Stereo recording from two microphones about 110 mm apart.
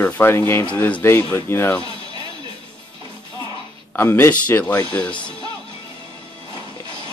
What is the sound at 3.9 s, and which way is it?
Speech, 20° left (ahead or behind).